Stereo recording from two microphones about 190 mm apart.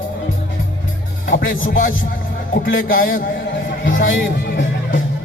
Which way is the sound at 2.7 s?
45° left (ahead or behind).